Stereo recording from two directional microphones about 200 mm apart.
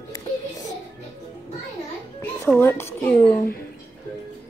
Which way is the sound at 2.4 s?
10° left (ahead or behind).